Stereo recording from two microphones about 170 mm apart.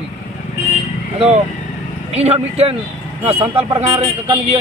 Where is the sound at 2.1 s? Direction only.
35° right (ahead or behind).